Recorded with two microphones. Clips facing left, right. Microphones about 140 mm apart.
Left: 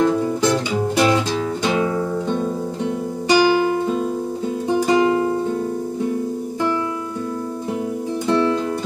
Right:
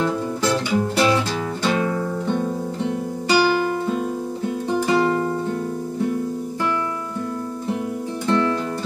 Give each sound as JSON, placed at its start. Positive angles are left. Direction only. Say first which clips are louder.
{"t": 0.4, "sound": "music", "louder": "left 2 dB", "side_deg": 15}
{"t": 8.3, "sound": "music", "louder": "left 2 dB", "side_deg": 15}